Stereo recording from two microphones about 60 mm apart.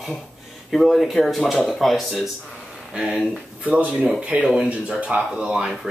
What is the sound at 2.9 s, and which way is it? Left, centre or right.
Speech, centre.